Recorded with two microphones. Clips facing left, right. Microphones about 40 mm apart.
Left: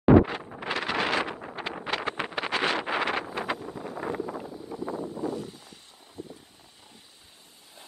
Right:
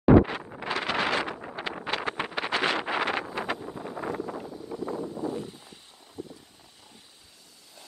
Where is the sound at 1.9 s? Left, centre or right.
Right.